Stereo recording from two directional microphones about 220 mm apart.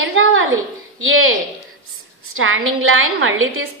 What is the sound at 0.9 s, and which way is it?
A woman's voice, 65° right (ahead or behind).